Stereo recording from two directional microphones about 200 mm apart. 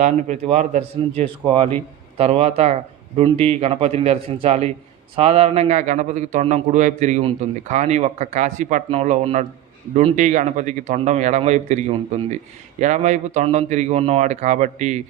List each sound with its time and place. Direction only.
0.0 s a man's voice: 35° right (ahead or behind)